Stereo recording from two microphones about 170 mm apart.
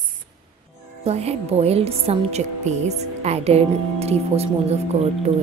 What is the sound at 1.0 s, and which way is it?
Speech, 40° right (ahead or behind).